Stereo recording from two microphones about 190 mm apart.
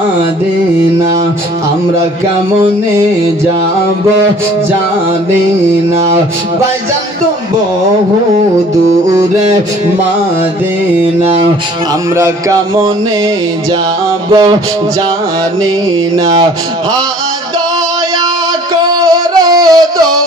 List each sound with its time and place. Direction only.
12.2 s speech: 15° right (ahead or behind)
14.3 s music: 20° right (ahead or behind)
16.2 s music: 20° right (ahead or behind)
18.9 s music: 20° right (ahead or behind)